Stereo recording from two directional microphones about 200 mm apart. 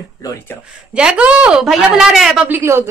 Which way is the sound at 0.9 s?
5° right (ahead or behind).